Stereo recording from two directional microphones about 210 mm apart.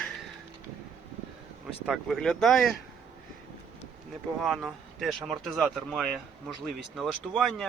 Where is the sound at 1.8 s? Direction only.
Centre (ahead or behind).